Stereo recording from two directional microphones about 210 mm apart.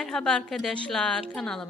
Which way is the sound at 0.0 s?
5° left (ahead or behind).